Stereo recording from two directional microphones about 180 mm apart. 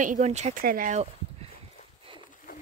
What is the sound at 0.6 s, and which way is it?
Speech, 50° right (ahead or behind).